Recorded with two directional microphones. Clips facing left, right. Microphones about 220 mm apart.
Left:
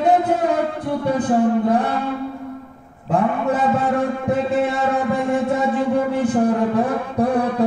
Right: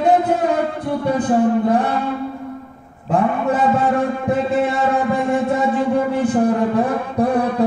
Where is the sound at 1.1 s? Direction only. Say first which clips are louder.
Right 1 dB; 20° right (ahead or behind).